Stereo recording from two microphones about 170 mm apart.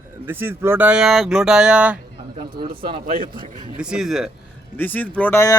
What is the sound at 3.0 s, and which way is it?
Speech, 55° right (ahead or behind).